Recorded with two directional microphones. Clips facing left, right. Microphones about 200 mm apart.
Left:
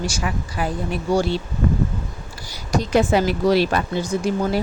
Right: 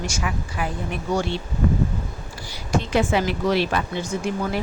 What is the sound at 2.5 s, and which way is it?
A woman's voice, 40° left (ahead or behind).